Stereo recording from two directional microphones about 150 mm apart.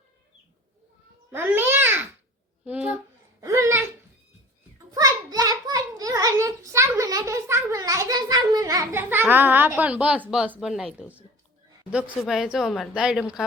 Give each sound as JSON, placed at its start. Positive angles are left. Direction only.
{"t": 1.3, "sound": "a child's voice", "side_deg": -15}
{"t": 3.4, "sound": "speech", "side_deg": -20}
{"t": 4.9, "sound": "a sound", "side_deg": -25}
{"t": 11.9, "sound": "a woman's voice", "side_deg": -5}